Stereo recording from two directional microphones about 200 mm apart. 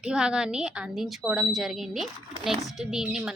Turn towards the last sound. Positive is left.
turn(degrees=-5)  # may be behind; listen again after turning